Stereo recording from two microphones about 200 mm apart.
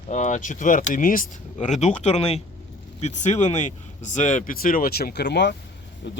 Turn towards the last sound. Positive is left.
turn(degrees=60)  # may be behind; listen again after turning